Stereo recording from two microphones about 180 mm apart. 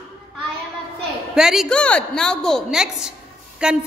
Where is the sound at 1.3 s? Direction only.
5° right (ahead or behind).